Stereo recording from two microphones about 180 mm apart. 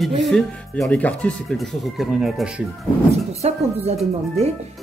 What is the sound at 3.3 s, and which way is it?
Speech, 35° right (ahead or behind).